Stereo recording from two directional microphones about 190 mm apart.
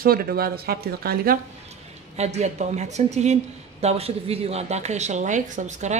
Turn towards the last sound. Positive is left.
turn(degrees=-40)  # may be behind; listen again after turning